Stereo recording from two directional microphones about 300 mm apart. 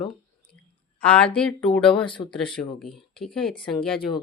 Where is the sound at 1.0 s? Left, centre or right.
Centre.